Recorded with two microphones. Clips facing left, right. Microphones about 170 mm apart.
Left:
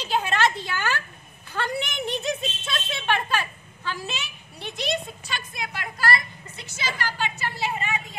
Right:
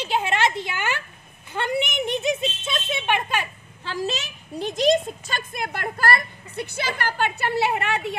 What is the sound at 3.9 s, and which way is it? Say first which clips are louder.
A woman's voice: right 5 dB; 40° right (ahead or behind).